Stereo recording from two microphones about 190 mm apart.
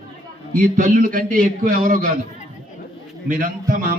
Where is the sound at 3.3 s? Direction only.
45° right (ahead or behind).